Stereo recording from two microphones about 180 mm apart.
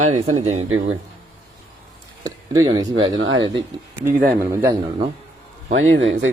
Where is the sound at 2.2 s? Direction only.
20° right (ahead or behind).